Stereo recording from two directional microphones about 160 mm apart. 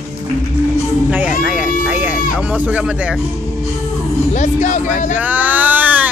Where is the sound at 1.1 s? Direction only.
5° right (ahead or behind).